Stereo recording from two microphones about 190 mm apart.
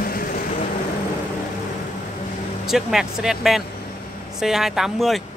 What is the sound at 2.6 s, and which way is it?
Speech, centre (ahead or behind).